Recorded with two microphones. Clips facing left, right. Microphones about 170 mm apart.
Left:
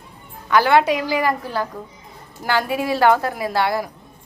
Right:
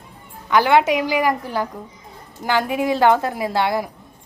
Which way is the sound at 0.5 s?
20° right (ahead or behind).